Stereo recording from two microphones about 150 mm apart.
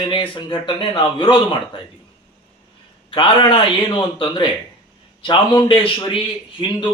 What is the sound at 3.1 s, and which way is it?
A man's voice, 35° left (ahead or behind).